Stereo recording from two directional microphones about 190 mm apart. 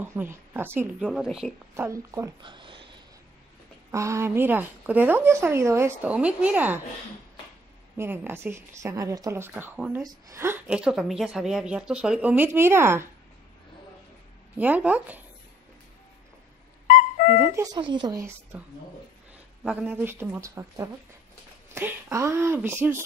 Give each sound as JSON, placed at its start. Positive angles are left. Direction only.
{"t": 0.0, "sound": "a woman's voice", "side_deg": -10}
{"t": 1.8, "sound": "speech", "side_deg": -15}
{"t": 3.9, "sound": "a woman's voice", "side_deg": -15}
{"t": 8.0, "sound": "a woman's voice", "side_deg": -10}
{"t": 14.6, "sound": "a woman's voice", "side_deg": -10}
{"t": 16.8, "sound": "dog", "side_deg": 45}
{"t": 17.7, "sound": "speech", "side_deg": -25}
{"t": 19.6, "sound": "a woman's voice", "side_deg": -10}